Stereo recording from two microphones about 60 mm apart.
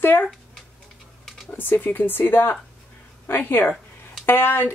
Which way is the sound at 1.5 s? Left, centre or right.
Left.